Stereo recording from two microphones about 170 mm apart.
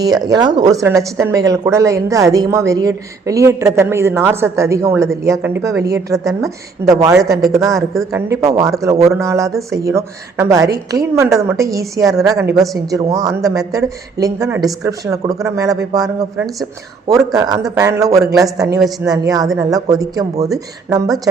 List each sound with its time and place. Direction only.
0.0 s speech: 25° right (ahead or behind)